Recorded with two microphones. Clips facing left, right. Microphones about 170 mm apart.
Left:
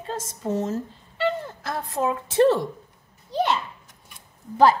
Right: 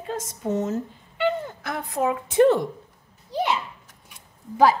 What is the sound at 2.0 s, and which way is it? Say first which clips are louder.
A woman's voice: right 1 dB; 20° right (ahead or behind).